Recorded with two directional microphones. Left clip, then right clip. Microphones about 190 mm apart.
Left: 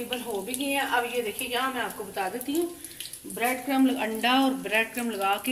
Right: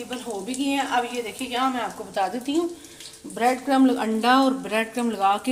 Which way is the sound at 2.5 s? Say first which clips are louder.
Right 4 dB; 50° right (ahead or behind).